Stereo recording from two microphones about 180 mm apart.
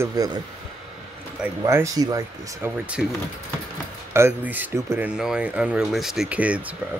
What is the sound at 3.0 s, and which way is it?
Speech, 5° right (ahead or behind).